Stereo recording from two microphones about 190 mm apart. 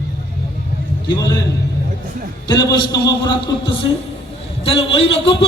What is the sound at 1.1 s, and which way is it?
Speech, 20° left (ahead or behind).